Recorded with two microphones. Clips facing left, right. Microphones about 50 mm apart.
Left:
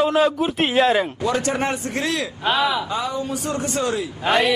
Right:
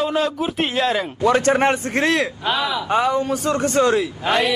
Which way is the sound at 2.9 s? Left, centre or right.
Right.